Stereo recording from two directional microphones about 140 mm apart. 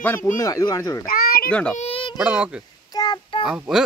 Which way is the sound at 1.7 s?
45° left (ahead or behind).